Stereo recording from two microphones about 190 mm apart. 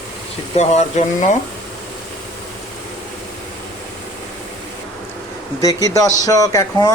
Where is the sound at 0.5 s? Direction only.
35° left (ahead or behind).